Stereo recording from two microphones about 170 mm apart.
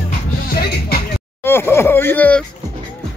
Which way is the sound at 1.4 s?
15° left (ahead or behind).